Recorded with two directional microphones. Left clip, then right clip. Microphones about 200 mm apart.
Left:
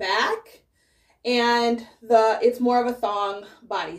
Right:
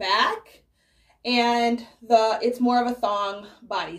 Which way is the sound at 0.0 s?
5° left (ahead or behind).